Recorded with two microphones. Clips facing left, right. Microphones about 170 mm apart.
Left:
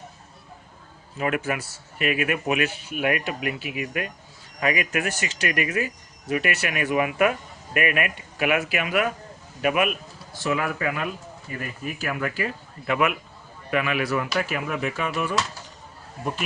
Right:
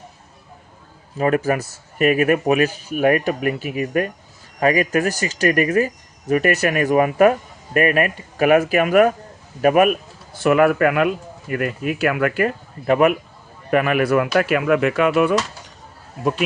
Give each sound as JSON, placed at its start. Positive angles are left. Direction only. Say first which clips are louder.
{"t": 1.2, "sound": "speech", "louder": "right 7 dB", "side_deg": -40}
{"t": 10.4, "sound": "speech", "louder": "right 11 dB", "side_deg": -60}